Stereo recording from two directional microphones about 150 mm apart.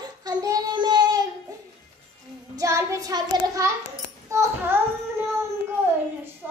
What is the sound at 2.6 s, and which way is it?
Child singing, 20° right (ahead or behind).